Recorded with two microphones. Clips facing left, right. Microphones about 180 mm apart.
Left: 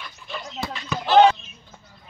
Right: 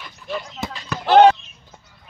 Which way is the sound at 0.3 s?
15° right (ahead or behind).